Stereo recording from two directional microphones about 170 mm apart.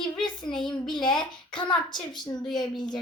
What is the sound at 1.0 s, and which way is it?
A child's voice, 25° left (ahead or behind).